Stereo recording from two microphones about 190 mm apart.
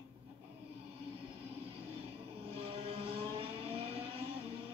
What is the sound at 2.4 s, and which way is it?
Vehicle, 30° right (ahead or behind).